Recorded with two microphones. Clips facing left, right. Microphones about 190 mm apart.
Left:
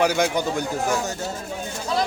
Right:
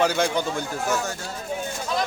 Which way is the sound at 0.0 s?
10° left (ahead or behind).